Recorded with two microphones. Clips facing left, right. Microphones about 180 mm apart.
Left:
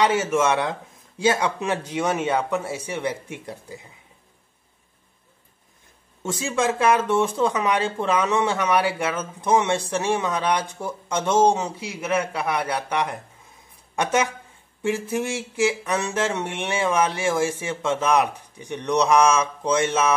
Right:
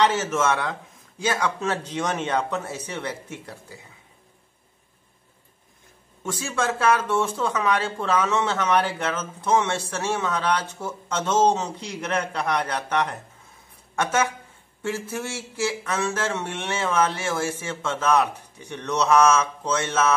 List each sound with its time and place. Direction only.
0.0 s speech: 10° left (ahead or behind)
1.6 s speech: 10° left (ahead or behind)
6.2 s speech: 15° left (ahead or behind)